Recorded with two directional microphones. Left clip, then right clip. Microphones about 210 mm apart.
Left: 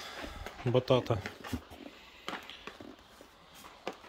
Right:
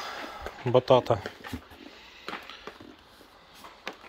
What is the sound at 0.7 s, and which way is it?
Speech, 5° left (ahead or behind).